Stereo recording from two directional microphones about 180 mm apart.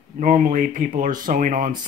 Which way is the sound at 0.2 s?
50° right (ahead or behind).